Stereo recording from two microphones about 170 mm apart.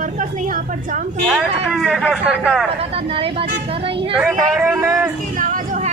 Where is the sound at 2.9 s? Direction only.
35° right (ahead or behind).